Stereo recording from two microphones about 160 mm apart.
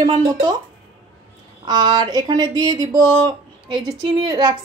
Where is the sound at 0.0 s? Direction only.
25° right (ahead or behind).